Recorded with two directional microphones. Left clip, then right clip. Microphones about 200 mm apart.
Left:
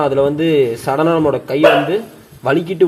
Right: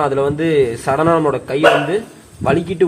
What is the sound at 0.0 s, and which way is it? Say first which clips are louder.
Speech: left 2 dB; 20° left (ahead or behind).